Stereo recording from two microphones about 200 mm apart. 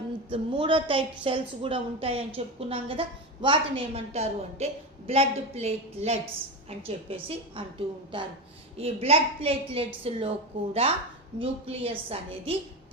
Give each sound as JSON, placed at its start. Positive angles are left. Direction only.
{"t": 0.3, "sound": "a woman's voice", "side_deg": -25}